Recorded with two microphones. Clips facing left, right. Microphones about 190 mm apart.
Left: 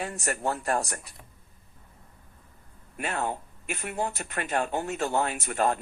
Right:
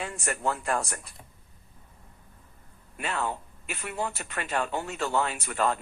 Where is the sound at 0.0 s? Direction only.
50° left (ahead or behind).